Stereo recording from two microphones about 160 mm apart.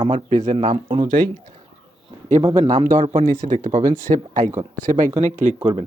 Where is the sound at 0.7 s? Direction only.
35° right (ahead or behind).